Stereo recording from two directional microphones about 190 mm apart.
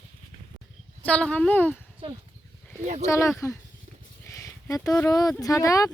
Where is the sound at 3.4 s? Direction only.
15° left (ahead or behind).